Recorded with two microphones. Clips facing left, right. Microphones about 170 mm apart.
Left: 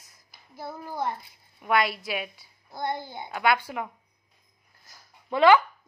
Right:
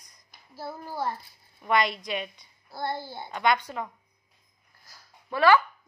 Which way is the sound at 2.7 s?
20° left (ahead or behind).